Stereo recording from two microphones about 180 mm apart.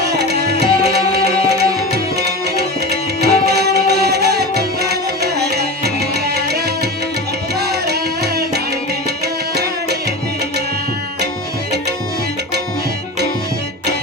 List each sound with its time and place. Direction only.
0.0 s music: 65° right (ahead or behind)
2.1 s tabla: 65° right (ahead or behind)
7.6 s music: 65° right (ahead or behind)